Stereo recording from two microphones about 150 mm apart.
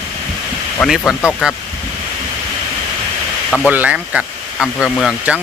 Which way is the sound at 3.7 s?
10° right (ahead or behind).